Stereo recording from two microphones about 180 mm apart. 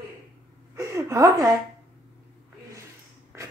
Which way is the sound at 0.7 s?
15° right (ahead or behind).